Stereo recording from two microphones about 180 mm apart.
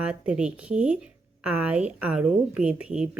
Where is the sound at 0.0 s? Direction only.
5° right (ahead or behind).